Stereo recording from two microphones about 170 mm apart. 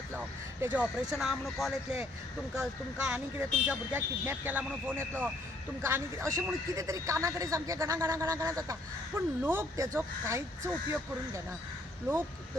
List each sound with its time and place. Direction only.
0.1 s speech: 10° right (ahead or behind)